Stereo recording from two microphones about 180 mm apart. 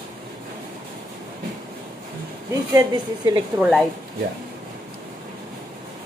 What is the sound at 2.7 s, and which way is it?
Speech, 20° right (ahead or behind).